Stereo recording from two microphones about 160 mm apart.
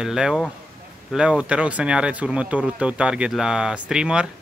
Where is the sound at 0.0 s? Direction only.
5° right (ahead or behind).